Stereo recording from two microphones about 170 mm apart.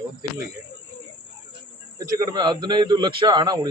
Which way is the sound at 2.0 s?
20° right (ahead or behind).